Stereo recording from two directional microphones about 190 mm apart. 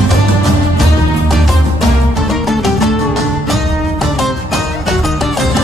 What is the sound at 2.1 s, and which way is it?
Music, centre (ahead or behind).